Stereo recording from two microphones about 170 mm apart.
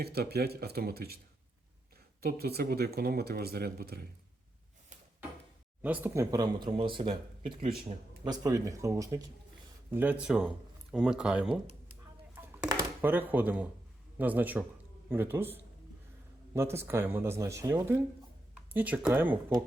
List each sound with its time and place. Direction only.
0.0 s speech: 70° right (ahead or behind)
2.2 s speech: 70° right (ahead or behind)
5.8 s speech: 10° right (ahead or behind)
6.3 s speech: 25° right (ahead or behind)
9.9 s speech: 10° right (ahead or behind)
12.6 s a sound: 20° right (ahead or behind)
13.1 s speech: 10° right (ahead or behind)